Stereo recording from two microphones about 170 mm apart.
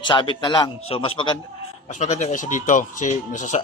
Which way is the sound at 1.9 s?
45° left (ahead or behind).